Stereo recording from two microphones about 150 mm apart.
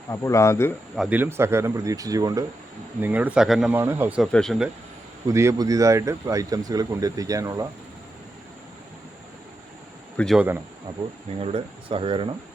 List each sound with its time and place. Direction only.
0.1 s speech: 20° left (ahead or behind)
0.9 s speech: 5° right (ahead or behind)
1.2 s speech: 15° right (ahead or behind)
3.0 s speech: 10° right (ahead or behind)
3.7 s speech: 15° right (ahead or behind)
4.2 s speech: 5° left (ahead or behind)
5.2 s speech: 20° right (ahead or behind)
10.3 s speech: 10° right (ahead or behind)
11.3 s speech: 40° right (ahead or behind)